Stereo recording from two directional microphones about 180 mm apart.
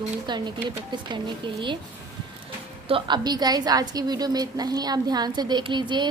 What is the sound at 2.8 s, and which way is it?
A woman's voice, 30° right (ahead or behind).